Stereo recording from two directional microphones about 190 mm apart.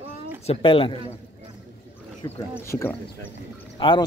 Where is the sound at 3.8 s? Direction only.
30° left (ahead or behind).